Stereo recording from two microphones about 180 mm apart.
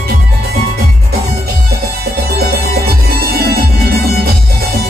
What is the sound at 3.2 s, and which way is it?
Music, 55° right (ahead or behind).